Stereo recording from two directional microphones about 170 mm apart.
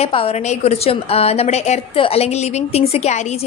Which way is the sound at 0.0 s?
35° left (ahead or behind).